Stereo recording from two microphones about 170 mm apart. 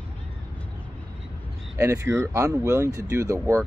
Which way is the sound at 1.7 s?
15° right (ahead or behind).